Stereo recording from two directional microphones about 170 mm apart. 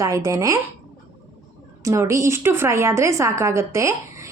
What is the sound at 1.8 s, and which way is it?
A woman's voice, 15° right (ahead or behind).